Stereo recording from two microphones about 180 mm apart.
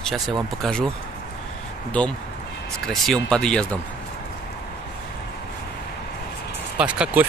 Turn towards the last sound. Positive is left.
turn(degrees=-10)  # may be behind; listen again after turning